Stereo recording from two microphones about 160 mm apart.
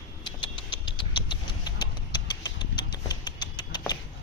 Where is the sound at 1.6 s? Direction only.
25° left (ahead or behind).